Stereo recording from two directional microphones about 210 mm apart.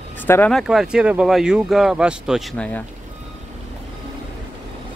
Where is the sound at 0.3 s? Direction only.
5° left (ahead or behind).